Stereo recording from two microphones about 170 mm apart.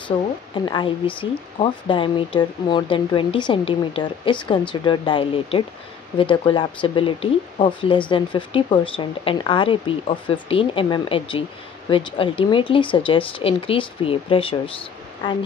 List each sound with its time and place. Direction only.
0.7 s speech: 30° left (ahead or behind)